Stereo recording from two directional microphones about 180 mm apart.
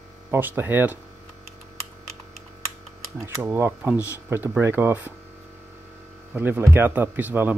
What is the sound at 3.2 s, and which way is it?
Speech, 10° right (ahead or behind).